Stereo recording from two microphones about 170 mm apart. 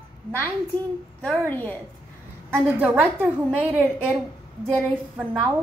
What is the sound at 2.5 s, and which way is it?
A woman's voice, 10° right (ahead or behind).